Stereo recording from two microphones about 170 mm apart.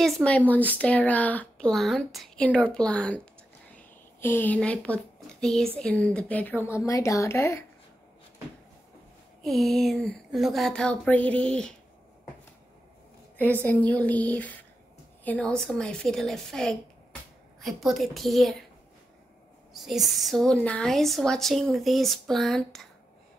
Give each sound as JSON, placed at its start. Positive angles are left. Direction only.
{"t": 0.0, "sound": "speech", "side_deg": 5}
{"t": 9.4, "sound": "speech", "side_deg": 0}
{"t": 13.4, "sound": "a woman's voice", "side_deg": 10}
{"t": 19.7, "sound": "speech", "side_deg": 0}